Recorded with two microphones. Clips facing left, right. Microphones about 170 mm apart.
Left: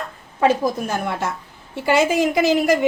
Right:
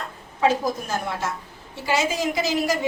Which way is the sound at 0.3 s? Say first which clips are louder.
Left 3 dB; 60° left (ahead or behind).